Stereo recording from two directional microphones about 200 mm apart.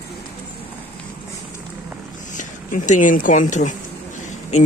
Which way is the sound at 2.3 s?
40° left (ahead or behind).